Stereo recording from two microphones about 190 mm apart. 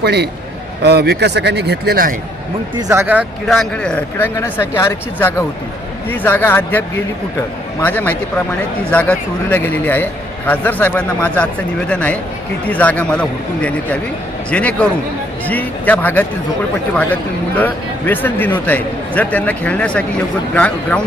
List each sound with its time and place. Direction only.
0.0 s a man's voice: 60° right (ahead or behind)
2.7 s speech: 15° right (ahead or behind); by 6.8 s 10° left (ahead or behind)
7.9 s speech: 10° left (ahead or behind)
17.6 s speech: 10° left (ahead or behind)